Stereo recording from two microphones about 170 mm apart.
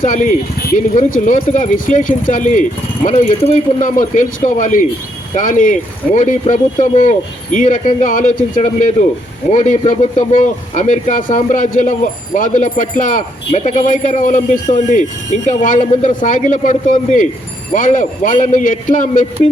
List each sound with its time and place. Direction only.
0.0 s speech: 50° left (ahead or behind)